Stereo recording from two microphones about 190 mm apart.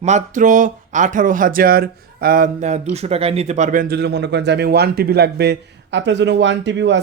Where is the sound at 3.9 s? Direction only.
60° right (ahead or behind).